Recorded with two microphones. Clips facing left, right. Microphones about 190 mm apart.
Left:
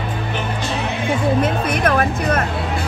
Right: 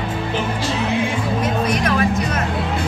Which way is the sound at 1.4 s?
55° left (ahead or behind).